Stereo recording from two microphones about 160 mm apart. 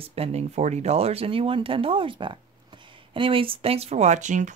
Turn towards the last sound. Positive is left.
turn(degrees=-50)  # may be behind; listen again after turning